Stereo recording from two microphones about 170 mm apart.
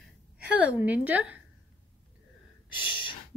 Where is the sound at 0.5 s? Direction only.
10° right (ahead or behind).